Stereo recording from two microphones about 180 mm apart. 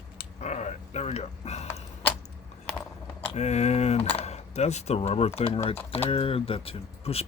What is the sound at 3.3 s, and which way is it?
Speech, 35° left (ahead or behind).